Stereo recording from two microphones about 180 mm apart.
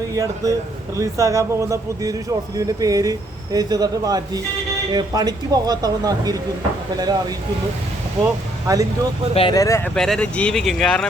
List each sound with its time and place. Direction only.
0.1 s a man's voice: 20° right (ahead or behind)
9.3 s speech: 30° left (ahead or behind)
9.6 s speech: 15° left (ahead or behind)
9.9 s speech: 5° left (ahead or behind)